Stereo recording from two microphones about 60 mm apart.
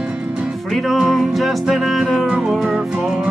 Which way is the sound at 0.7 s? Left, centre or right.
Centre.